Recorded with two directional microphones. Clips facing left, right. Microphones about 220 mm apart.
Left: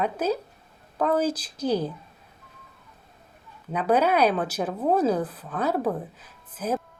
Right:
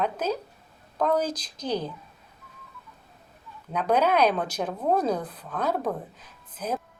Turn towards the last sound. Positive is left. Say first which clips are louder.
# left 3 dB
turn(degrees=5)  # may be behind; listen again after turning